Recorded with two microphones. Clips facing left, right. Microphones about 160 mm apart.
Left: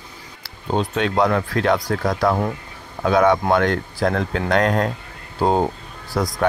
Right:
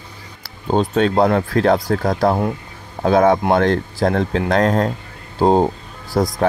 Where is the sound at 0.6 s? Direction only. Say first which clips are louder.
Right 5 dB; 40° right (ahead or behind).